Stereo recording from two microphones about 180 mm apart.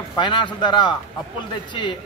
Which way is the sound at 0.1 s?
25° left (ahead or behind).